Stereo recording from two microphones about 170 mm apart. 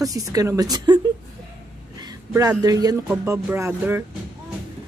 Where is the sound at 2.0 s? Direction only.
20° right (ahead or behind).